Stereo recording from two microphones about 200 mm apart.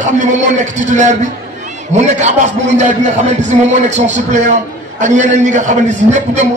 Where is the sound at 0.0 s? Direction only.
35° right (ahead or behind).